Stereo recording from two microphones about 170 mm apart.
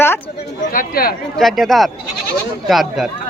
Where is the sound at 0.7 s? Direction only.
55° left (ahead or behind).